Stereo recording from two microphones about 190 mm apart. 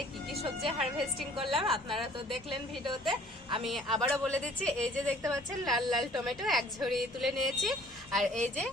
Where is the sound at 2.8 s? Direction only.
25° right (ahead or behind).